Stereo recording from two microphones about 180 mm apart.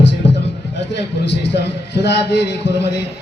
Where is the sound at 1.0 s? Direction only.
75° left (ahead or behind).